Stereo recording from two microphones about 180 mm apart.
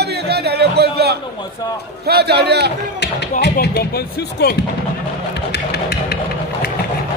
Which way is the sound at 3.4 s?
65° left (ahead or behind).